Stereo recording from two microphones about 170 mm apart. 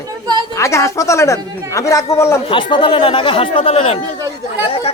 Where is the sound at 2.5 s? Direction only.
30° left (ahead or behind).